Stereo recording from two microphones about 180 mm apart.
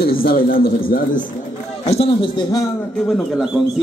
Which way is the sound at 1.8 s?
35° left (ahead or behind).